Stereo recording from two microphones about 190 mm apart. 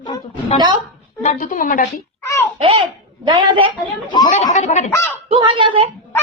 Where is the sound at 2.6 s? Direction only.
30° right (ahead or behind).